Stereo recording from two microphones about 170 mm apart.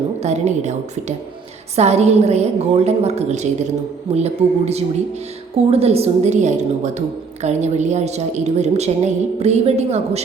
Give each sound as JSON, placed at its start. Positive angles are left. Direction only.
{"t": 0.2, "sound": "a woman's voice", "side_deg": -40}